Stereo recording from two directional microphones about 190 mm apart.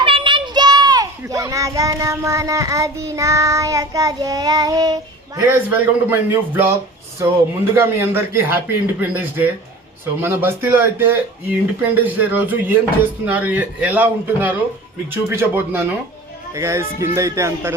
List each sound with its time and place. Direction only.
0.0 s child singing: 25° right (ahead or behind)